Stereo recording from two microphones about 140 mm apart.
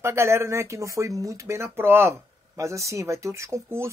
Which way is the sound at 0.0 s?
20° right (ahead or behind).